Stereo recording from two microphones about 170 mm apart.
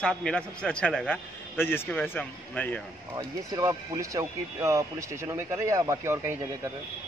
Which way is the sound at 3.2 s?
20° right (ahead or behind).